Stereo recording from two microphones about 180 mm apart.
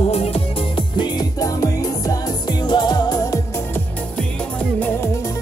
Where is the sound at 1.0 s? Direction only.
20° left (ahead or behind).